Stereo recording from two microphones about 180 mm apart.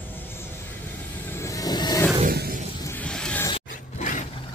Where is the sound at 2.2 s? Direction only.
60° right (ahead or behind).